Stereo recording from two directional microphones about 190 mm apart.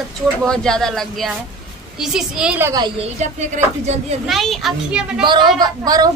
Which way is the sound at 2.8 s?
30° right (ahead or behind).